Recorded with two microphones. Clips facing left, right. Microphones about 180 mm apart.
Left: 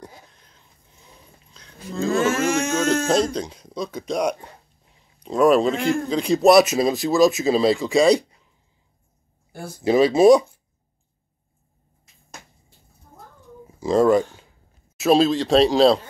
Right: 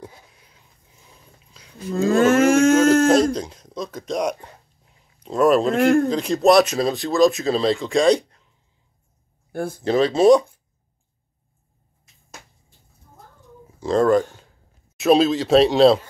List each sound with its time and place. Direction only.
0.0 s a sound: 5° right (ahead or behind)
2.1 s a sound: 55° right (ahead or behind)
3.3 s speech: centre (ahead or behind)
9.5 s speech: 55° right (ahead or behind)
9.8 s speech: 10° left (ahead or behind)
13.7 s speech: 5° left (ahead or behind)